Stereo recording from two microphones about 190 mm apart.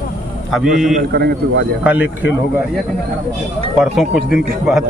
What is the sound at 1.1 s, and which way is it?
Speech, 60° right (ahead or behind).